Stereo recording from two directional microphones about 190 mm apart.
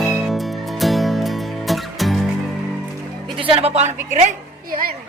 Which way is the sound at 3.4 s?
30° right (ahead or behind).